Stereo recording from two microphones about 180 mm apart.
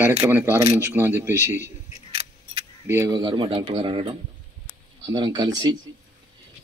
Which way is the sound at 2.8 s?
15° right (ahead or behind).